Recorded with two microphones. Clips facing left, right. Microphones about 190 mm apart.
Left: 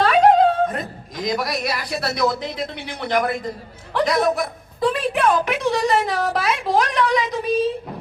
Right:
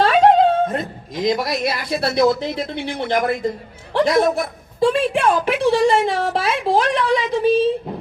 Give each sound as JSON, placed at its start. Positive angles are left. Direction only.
{"t": 0.0, "sound": "speech", "side_deg": -30}